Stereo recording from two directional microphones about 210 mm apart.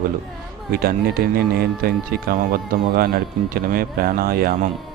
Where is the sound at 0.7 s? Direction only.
45° right (ahead or behind).